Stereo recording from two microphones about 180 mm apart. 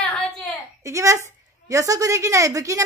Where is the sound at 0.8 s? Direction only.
15° right (ahead or behind).